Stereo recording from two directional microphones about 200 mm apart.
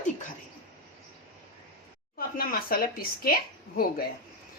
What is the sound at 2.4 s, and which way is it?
A woman's voice, 45° left (ahead or behind).